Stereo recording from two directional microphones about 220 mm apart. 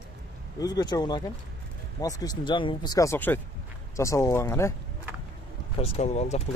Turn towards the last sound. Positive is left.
turn(degrees=30)  # may be behind; listen again after turning